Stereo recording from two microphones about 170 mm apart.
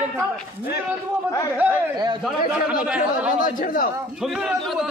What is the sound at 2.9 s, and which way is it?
Speech, 10° right (ahead or behind).